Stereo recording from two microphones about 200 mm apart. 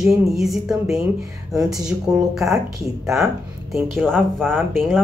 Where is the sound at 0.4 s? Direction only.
Centre (ahead or behind).